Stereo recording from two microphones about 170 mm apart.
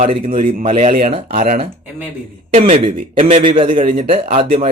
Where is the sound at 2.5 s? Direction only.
40° right (ahead or behind).